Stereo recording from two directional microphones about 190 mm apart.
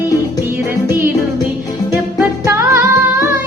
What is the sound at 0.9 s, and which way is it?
Music, 10° right (ahead or behind).